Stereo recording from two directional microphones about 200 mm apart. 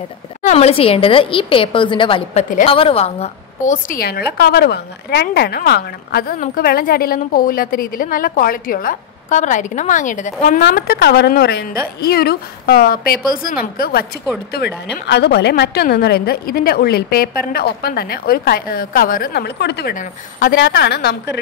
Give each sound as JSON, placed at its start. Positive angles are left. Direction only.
{"t": 0.4, "sound": "a woman's voice", "side_deg": 35}
{"t": 10.6, "sound": "a woman's voice", "side_deg": 50}